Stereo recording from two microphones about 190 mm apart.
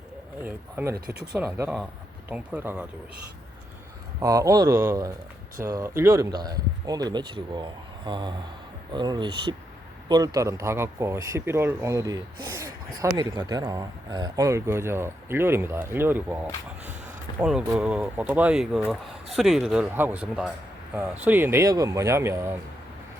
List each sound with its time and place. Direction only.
0.4 s speech: 10° right (ahead or behind)
4.2 s speech: 20° right (ahead or behind)
17.4 s speech: 5° right (ahead or behind)